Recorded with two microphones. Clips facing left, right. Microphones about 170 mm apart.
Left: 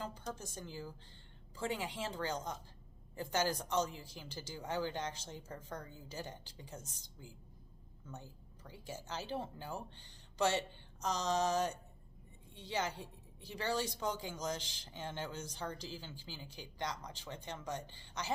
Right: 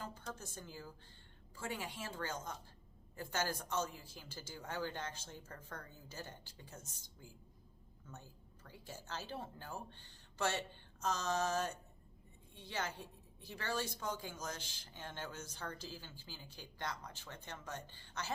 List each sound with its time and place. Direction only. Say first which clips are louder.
0.1 s speech: left 3 dB; 15° left (ahead or behind)
1.8 s speech: left 4 dB; 15° left (ahead or behind)